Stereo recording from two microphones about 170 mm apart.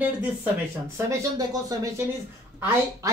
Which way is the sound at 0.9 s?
20° right (ahead or behind).